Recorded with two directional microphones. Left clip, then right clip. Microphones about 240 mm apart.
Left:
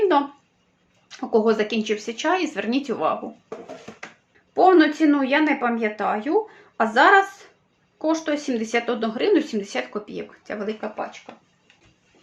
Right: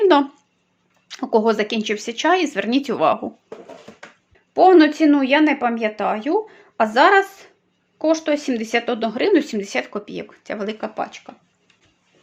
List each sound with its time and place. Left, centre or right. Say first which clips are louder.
1.0 s speech: right 2 dB; right
4.5 s speech: right 3 dB; right